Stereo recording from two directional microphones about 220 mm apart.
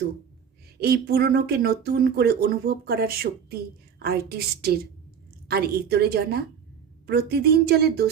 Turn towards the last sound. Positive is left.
turn(degrees=-45)  # may be behind; listen again after turning